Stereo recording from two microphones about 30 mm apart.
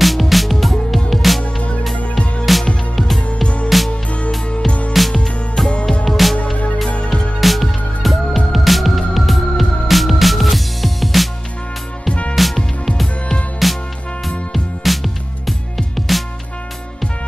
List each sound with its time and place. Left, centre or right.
0.0 s music: centre
1.4 s music: left
2.5 s music: centre
5.0 s music: centre
6.3 s music: left
7.3 s music: centre
12.1 s music: left
12.5 s music: centre
13.6 s music: centre
14.8 s music: centre
16.1 s music: centre